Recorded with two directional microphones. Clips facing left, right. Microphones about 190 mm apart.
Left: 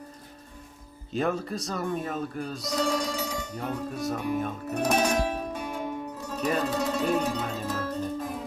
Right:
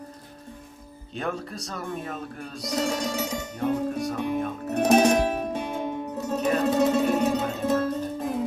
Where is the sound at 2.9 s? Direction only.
25° right (ahead or behind).